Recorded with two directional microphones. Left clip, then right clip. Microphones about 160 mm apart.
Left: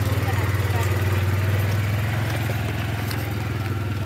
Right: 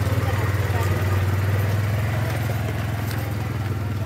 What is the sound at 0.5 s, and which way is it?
Vehicle, 5° right (ahead or behind).